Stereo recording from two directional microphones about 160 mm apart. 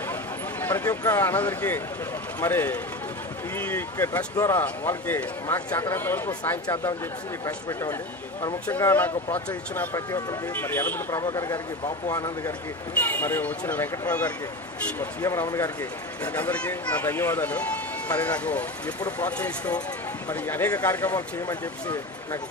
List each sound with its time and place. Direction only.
0.6 s speech: 15° left (ahead or behind)
8.6 s speech: 10° left (ahead or behind)